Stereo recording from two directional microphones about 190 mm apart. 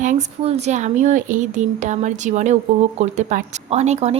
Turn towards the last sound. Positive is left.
turn(degrees=-35)  # may be behind; listen again after turning